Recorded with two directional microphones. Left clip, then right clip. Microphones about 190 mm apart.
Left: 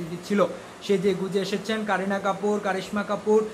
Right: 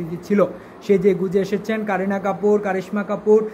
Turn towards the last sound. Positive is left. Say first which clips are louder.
# right 4 dB
turn(degrees=-5)  # may be behind; listen again after turning